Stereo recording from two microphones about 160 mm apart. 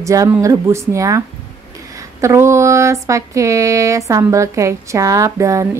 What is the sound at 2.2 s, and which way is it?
Speech, 15° right (ahead or behind).